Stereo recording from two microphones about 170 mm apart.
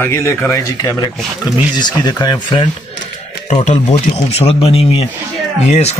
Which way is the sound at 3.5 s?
40° left (ahead or behind).